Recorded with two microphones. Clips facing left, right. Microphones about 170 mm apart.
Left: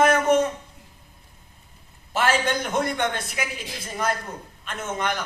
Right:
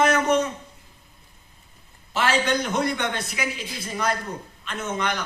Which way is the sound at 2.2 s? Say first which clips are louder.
Even; 50° left (ahead or behind).